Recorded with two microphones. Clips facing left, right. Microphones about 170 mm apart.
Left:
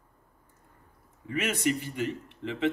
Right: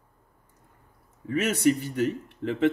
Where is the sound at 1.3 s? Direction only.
40° right (ahead or behind).